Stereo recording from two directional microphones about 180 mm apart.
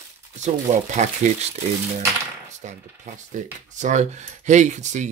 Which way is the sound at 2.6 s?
40° right (ahead or behind).